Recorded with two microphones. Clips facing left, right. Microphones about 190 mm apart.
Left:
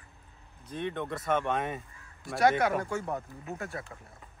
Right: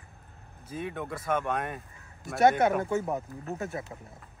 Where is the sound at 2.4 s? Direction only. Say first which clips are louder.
Right 3 dB; 25° right (ahead or behind).